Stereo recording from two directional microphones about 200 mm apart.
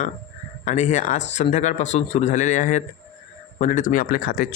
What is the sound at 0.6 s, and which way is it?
Speech, 35° left (ahead or behind).